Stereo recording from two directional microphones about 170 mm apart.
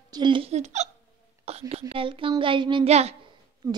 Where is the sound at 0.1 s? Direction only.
25° right (ahead or behind).